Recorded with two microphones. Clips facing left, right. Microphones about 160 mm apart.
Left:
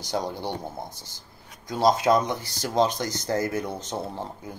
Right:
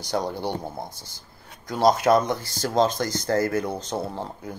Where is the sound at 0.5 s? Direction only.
20° left (ahead or behind).